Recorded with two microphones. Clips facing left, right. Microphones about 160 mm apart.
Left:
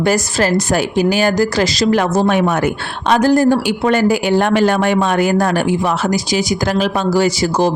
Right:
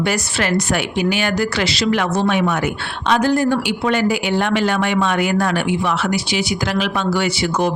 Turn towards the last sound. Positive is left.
turn(degrees=35)  # may be behind; listen again after turning